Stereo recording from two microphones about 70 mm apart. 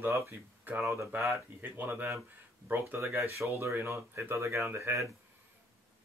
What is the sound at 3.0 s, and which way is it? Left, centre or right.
Speech, right.